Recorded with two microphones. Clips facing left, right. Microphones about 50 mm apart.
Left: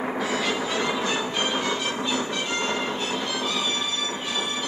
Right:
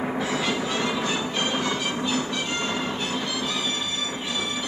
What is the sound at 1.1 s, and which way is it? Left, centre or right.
Music, centre.